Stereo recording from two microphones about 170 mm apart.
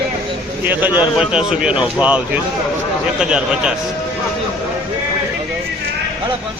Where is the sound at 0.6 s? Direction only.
10° right (ahead or behind).